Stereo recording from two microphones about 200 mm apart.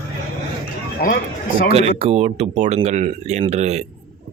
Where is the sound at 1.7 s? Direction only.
30° right (ahead or behind).